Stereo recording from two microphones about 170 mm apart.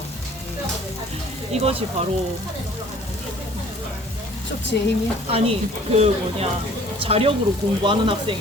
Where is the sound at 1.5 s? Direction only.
40° right (ahead or behind).